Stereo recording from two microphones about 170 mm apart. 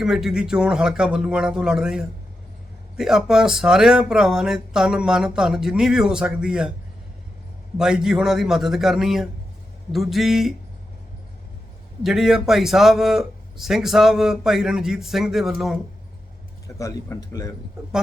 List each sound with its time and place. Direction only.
0.0 s speech: 5° right (ahead or behind)
7.8 s speech: 5° right (ahead or behind)
12.0 s speech: centre (ahead or behind)
16.6 s speech: 20° left (ahead or behind)